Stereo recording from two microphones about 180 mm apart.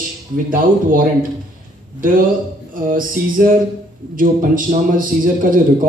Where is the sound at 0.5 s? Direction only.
50° right (ahead or behind).